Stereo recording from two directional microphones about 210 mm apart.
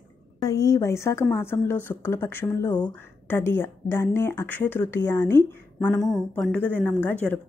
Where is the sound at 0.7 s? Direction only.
15° left (ahead or behind).